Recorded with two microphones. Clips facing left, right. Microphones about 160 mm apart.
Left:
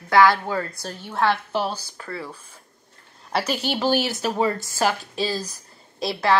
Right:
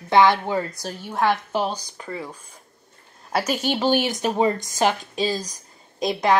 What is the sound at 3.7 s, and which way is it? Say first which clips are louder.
A woman's voice: even; 15° right (ahead or behind).